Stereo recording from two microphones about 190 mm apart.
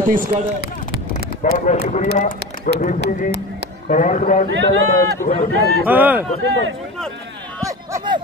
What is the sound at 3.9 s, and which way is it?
Speech, 40° left (ahead or behind).